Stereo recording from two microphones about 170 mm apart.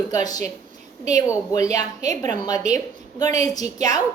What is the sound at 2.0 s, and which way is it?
Speech, 45° right (ahead or behind).